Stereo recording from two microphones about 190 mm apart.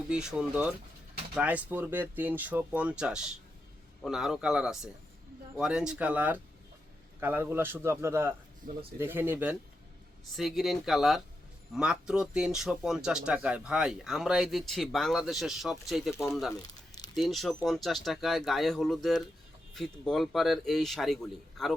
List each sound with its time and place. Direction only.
0.1 s a man's voice: 5° right (ahead or behind)
8.7 s a man's voice: 45° right (ahead or behind)
9.0 s a man's voice: 10° right (ahead or behind)
16.1 s speech: 15° left (ahead or behind)
17.2 s a man's voice: centre (ahead or behind)